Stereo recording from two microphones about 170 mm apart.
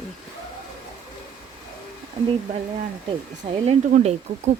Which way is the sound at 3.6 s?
40° right (ahead or behind).